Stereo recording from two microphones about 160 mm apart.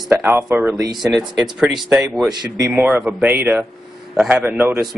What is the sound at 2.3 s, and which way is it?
Speech, 20° right (ahead or behind).